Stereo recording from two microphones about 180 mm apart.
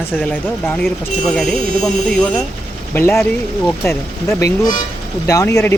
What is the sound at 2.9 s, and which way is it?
Speech, 15° left (ahead or behind).